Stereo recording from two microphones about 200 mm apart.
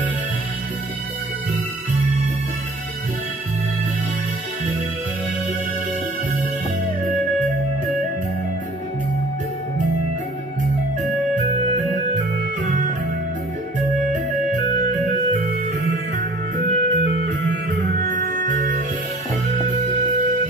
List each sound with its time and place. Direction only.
11.7 s music: 35° right (ahead or behind)
16.5 s music: 40° right (ahead or behind)